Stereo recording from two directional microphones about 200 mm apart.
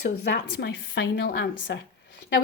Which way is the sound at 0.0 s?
60° left (ahead or behind).